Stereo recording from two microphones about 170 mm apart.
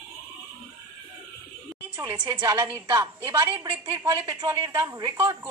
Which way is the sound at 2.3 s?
20° right (ahead or behind).